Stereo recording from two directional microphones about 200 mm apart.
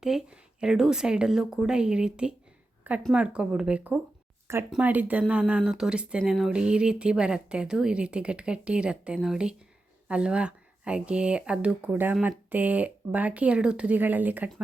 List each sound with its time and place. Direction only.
0.0 s speech: centre (ahead or behind)